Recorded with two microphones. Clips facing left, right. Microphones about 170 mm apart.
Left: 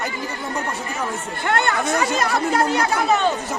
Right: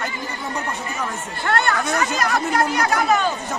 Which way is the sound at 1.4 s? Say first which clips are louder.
Even; 20° left (ahead or behind).